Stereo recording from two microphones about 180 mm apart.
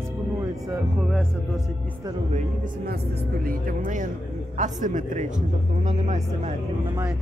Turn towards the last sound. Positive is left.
turn(degrees=-40)  # may be behind; listen again after turning